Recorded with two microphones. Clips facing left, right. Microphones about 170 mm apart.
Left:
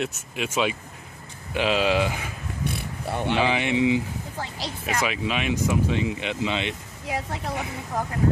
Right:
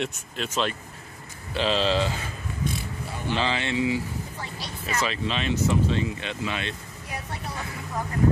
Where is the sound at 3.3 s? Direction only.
15° left (ahead or behind).